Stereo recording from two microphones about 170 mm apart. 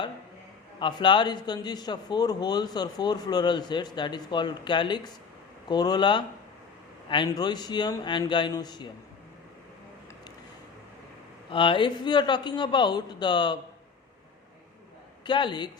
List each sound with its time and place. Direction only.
0.8 s a man's voice: 25° left (ahead or behind)
11.5 s a man's voice: 30° left (ahead or behind)
15.3 s a man's voice: 25° left (ahead or behind)